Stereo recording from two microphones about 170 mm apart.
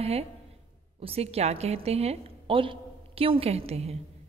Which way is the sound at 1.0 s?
35° right (ahead or behind).